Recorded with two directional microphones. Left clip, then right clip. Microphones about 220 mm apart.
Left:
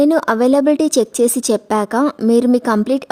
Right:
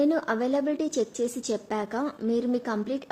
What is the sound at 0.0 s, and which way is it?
A woman's voice, 50° left (ahead or behind).